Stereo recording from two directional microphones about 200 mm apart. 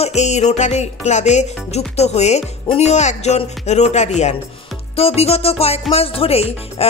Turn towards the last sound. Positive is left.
turn(degrees=30)  # may be behind; listen again after turning